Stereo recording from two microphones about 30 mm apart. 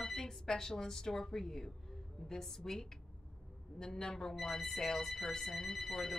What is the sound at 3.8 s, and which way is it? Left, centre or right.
Speech, centre.